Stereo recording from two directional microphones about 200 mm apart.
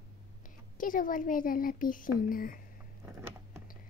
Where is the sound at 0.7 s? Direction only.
45° left (ahead or behind).